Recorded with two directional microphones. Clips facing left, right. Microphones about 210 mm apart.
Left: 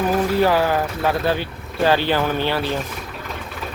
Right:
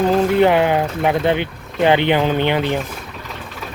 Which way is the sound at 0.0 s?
25° right (ahead or behind).